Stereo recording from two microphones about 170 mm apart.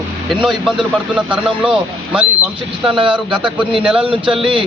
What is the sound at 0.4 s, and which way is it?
A man's voice, centre (ahead or behind).